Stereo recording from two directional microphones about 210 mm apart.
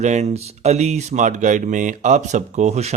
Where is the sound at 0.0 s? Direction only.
35° right (ahead or behind).